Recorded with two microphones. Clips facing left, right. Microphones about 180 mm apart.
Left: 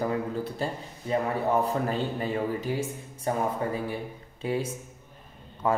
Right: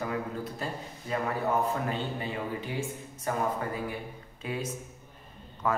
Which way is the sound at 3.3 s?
25° left (ahead or behind).